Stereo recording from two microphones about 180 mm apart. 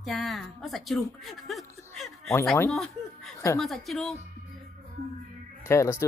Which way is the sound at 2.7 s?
Centre (ahead or behind).